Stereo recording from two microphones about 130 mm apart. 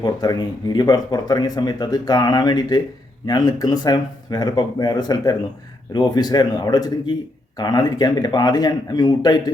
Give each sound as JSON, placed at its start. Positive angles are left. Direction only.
{"t": 0.0, "sound": "speech", "side_deg": 30}